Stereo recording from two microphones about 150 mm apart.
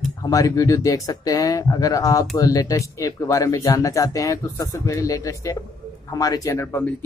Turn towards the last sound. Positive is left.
turn(degrees=15)  # may be behind; listen again after turning